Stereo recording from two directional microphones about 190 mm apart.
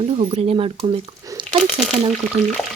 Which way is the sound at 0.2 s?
30° right (ahead or behind).